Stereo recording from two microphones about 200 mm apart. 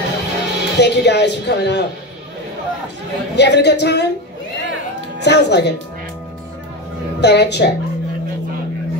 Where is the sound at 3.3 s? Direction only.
55° left (ahead or behind).